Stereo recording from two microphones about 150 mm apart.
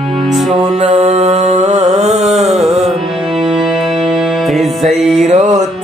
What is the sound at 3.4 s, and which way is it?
Music, centre (ahead or behind).